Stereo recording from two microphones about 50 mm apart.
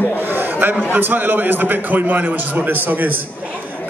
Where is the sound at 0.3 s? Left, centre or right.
Right.